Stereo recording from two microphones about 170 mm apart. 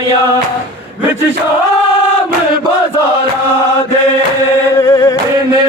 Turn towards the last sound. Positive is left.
turn(degrees=20)  # may be behind; listen again after turning